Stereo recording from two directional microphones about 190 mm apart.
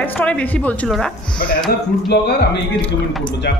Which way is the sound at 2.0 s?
60° left (ahead or behind).